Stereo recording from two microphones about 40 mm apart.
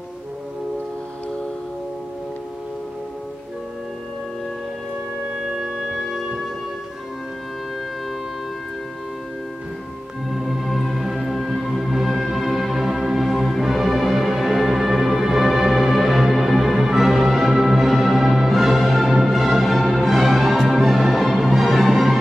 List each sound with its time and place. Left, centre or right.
5.6 s music: centre
10.3 s music: centre